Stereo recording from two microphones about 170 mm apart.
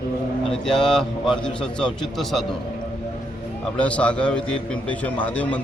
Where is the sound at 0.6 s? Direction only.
5° left (ahead or behind).